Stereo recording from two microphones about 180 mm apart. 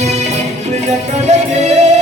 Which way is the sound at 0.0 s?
40° right (ahead or behind).